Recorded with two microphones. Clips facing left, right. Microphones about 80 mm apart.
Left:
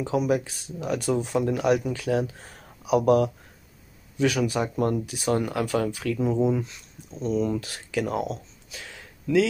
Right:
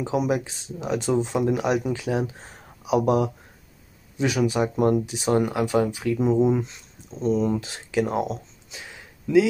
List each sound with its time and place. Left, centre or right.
0.0 s speech: right